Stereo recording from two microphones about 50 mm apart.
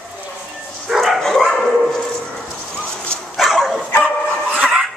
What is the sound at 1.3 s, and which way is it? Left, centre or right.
Dog, centre.